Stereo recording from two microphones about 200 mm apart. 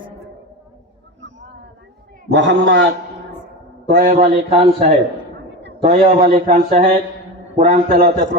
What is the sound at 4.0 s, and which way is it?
Speech, 40° right (ahead or behind).